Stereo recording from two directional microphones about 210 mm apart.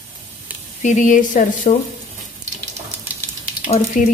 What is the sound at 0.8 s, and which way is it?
Speech, 35° left (ahead or behind).